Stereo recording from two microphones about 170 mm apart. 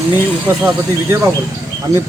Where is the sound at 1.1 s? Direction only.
15° right (ahead or behind).